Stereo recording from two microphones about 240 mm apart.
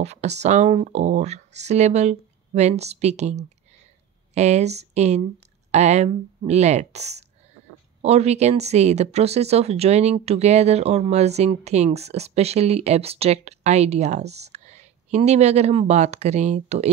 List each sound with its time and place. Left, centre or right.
0.0 s speech: right